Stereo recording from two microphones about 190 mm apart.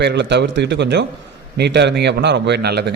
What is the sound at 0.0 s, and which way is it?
A man's voice, 65° right (ahead or behind).